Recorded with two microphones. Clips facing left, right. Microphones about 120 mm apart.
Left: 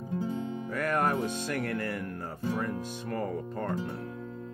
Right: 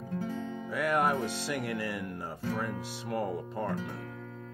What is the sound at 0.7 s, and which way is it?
Music, 15° right (ahead or behind).